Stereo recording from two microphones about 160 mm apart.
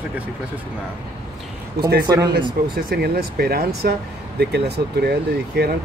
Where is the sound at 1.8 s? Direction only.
80° right.